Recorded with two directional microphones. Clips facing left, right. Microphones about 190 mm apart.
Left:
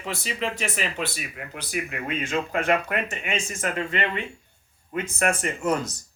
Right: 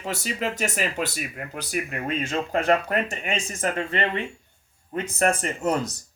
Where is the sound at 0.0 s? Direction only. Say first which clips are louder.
Right 1 dB; 40° right (ahead or behind).